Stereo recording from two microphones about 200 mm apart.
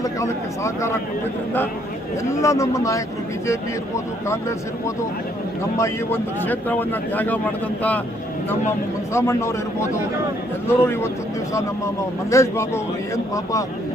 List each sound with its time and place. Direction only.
0.0 s speech: 15° left (ahead or behind)
2.4 s speech: 15° left (ahead or behind)
5.7 s speech: 15° left (ahead or behind)
9.1 s speech: 15° left (ahead or behind)
10.7 s speech: 10° left (ahead or behind)
12.3 s speech: 15° left (ahead or behind)